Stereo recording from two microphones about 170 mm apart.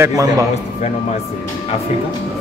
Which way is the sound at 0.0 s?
20° right (ahead or behind).